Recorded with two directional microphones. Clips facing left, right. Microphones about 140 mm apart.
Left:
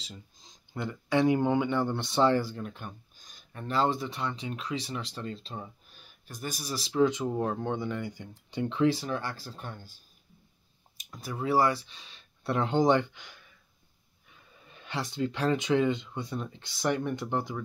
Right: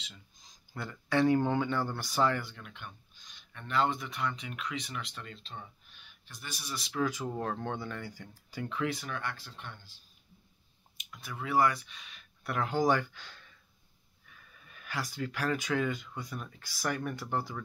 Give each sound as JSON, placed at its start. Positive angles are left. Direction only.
{"t": 0.0, "sound": "speech", "side_deg": 30}